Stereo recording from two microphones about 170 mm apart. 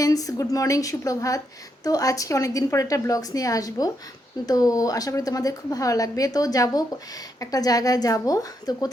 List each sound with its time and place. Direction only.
0.0 s a woman's voice: 20° left (ahead or behind)